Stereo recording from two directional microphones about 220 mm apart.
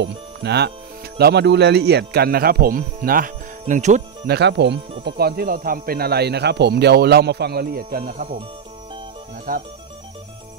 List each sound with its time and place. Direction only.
0.0 s speech: 50° right (ahead or behind); by 4.0 s 35° right (ahead or behind)
4.3 s speech: 50° right (ahead or behind)
9.5 s speech: 40° right (ahead or behind)